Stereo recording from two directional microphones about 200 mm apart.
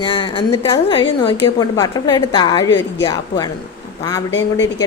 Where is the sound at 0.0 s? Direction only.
25° left (ahead or behind).